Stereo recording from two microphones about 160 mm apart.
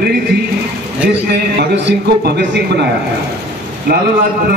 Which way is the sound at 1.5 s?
90° right.